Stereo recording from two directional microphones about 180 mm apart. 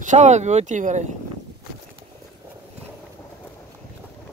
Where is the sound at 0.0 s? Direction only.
40° right (ahead or behind).